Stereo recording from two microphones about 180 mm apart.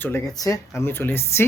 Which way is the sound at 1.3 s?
15° left (ahead or behind).